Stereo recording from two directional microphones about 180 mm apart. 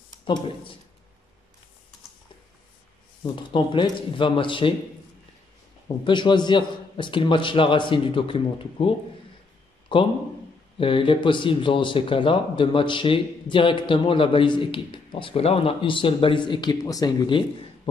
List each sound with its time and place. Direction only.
3.3 s speech: 25° left (ahead or behind)
6.0 s speech: 25° left (ahead or behind)